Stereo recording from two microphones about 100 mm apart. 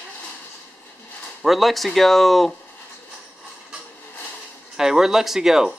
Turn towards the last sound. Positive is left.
turn(degrees=-5)  # may be behind; listen again after turning